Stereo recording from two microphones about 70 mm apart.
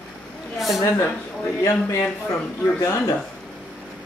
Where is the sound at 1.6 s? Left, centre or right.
Left.